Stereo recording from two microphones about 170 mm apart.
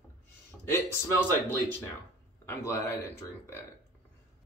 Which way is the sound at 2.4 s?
15° left (ahead or behind).